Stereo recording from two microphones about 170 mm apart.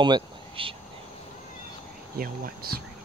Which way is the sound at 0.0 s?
30° right (ahead or behind).